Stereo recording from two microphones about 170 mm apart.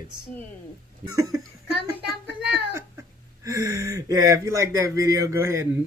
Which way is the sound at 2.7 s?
15° right (ahead or behind).